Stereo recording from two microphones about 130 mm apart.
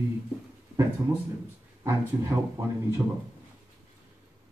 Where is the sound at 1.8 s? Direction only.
20° right (ahead or behind).